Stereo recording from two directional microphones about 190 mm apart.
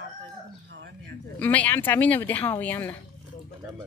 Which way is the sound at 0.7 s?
65° right (ahead or behind).